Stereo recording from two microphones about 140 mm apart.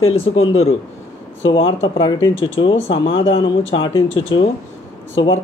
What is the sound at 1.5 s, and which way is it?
Speech, 35° left (ahead or behind).